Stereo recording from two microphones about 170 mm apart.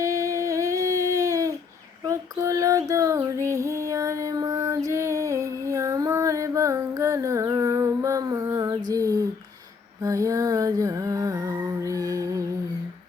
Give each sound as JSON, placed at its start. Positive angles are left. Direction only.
{"t": 0.0, "sound": "a sound", "side_deg": -20}
{"t": 3.4, "sound": "female singing", "side_deg": -15}
{"t": 10.0, "sound": "music", "side_deg": -20}